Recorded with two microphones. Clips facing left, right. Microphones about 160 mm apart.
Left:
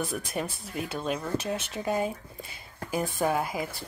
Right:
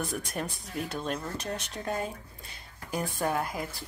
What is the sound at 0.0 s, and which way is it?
Speech, centre (ahead or behind).